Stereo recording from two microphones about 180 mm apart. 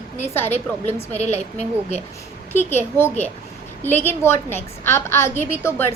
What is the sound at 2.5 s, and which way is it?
A woman's voice, 10° left (ahead or behind).